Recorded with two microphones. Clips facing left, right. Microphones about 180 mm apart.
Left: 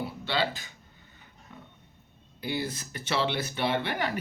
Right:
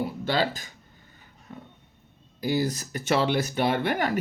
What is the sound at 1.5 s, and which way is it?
Roaring cats, 40° right (ahead or behind).